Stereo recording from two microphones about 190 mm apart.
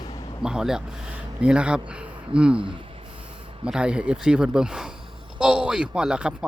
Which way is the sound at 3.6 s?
5° right (ahead or behind).